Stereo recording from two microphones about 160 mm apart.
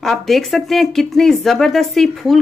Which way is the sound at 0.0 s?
Centre (ahead or behind).